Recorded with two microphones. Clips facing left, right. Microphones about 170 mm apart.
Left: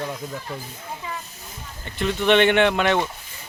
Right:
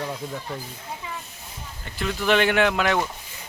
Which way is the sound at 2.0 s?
Centre (ahead or behind).